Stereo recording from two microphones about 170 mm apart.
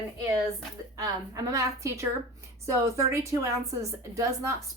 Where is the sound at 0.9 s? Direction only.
20° right (ahead or behind).